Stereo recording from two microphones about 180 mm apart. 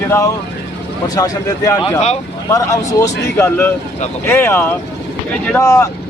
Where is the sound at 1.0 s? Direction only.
20° left (ahead or behind).